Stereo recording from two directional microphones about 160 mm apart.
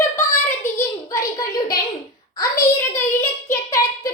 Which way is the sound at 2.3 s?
20° left (ahead or behind).